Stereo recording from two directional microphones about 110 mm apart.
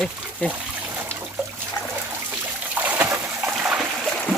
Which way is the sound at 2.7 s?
15° right (ahead or behind).